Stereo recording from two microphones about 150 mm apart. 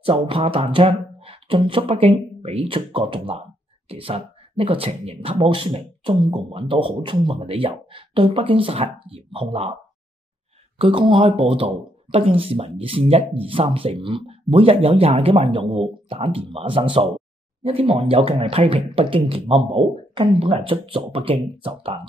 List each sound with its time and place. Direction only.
0.0 s speech: 40° right (ahead or behind)
10.8 s speech: 35° right (ahead or behind)